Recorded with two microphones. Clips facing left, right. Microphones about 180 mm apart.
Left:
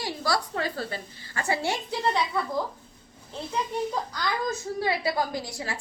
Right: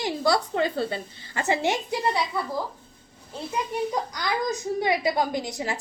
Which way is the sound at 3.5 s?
15° right (ahead or behind).